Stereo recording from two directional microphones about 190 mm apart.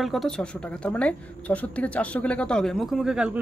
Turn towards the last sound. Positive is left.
turn(degrees=-5)  # may be behind; listen again after turning